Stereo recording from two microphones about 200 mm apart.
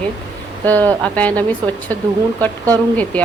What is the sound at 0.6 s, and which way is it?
Speech, 10° left (ahead or behind).